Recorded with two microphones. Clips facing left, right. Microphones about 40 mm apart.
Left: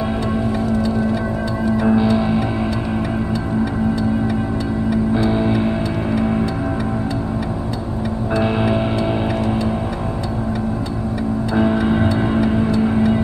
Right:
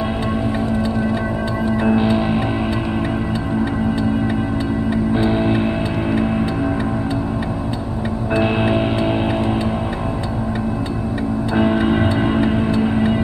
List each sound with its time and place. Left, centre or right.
1.7 s music: right
4.8 s vehicle: right
6.1 s music: centre
8.4 s music: right
11.5 s music: right